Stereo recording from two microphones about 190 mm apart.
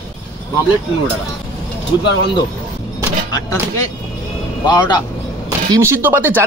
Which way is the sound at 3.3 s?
20° left (ahead or behind).